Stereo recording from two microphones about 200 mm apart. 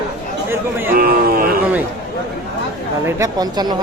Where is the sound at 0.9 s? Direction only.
50° right (ahead or behind).